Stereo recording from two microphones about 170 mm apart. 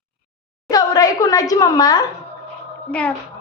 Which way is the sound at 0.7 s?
20° left (ahead or behind).